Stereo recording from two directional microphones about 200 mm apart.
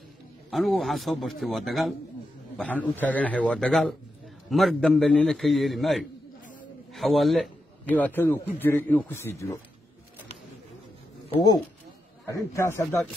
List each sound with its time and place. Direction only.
0.5 s a man's voice: centre (ahead or behind)
11.2 s speech: 25° left (ahead or behind)
12.3 s a man's voice: 15° left (ahead or behind)